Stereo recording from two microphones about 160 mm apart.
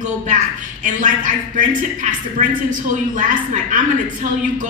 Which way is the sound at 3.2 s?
55° right (ahead or behind).